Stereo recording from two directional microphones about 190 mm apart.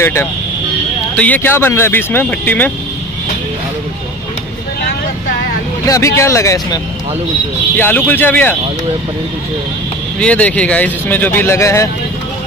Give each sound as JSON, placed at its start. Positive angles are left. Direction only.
{"t": 0.0, "sound": "speech", "side_deg": 15}
{"t": 5.9, "sound": "speech", "side_deg": 15}
{"t": 10.2, "sound": "speech", "side_deg": 5}